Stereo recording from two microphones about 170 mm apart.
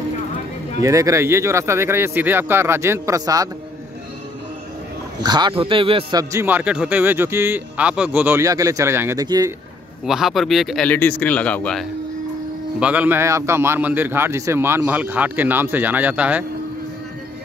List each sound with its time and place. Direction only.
0.8 s a man's voice: 20° right (ahead or behind)
5.2 s a man's voice: 25° right (ahead or behind)
6.3 s a man's voice: 10° right (ahead or behind)
10.0 s speech: centre (ahead or behind)
10.9 s a man's voice: 10° left (ahead or behind)
12.8 s a man's voice: 10° right (ahead or behind)